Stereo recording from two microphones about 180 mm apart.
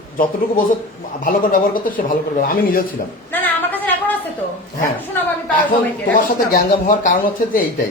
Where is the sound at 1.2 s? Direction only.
50° left (ahead or behind).